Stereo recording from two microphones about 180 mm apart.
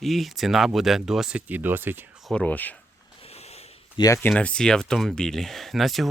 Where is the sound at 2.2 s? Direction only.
5° left (ahead or behind).